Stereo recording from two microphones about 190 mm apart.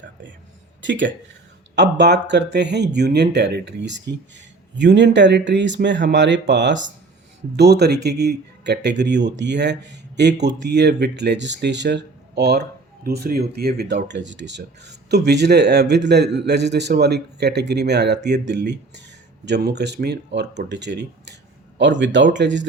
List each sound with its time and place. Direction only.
0.8 s speech: 75° right (ahead or behind)
1.7 s speech: 65° right (ahead or behind)